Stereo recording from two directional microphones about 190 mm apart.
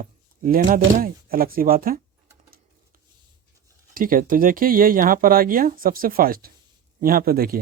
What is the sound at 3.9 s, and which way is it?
Speech, 45° right (ahead or behind).